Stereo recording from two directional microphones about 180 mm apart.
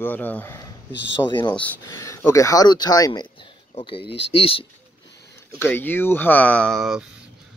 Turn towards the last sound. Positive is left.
turn(degrees=0)  # may be behind; listen again after turning